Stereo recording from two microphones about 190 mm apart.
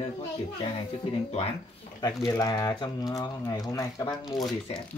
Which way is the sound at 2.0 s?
20° left (ahead or behind).